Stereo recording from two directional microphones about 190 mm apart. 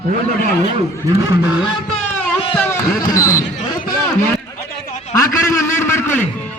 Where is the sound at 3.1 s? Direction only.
20° left (ahead or behind).